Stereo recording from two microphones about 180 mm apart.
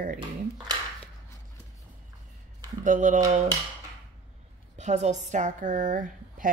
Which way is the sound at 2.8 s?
45° right (ahead or behind).